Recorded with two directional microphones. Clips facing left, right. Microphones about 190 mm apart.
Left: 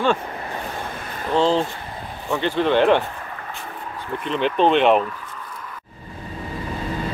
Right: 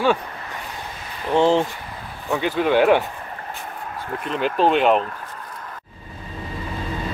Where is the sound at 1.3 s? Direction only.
15° right (ahead or behind).